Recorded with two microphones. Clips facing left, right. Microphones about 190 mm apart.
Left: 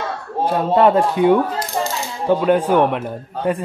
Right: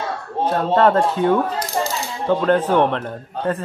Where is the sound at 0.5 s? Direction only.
10° left (ahead or behind).